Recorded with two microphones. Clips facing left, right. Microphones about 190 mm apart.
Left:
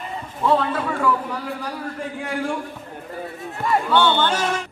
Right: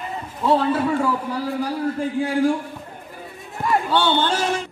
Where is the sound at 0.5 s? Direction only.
30° right (ahead or behind).